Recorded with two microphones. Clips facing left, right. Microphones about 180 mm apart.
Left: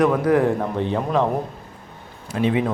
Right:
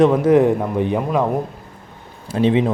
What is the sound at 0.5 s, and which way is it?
Speech, 10° right (ahead or behind).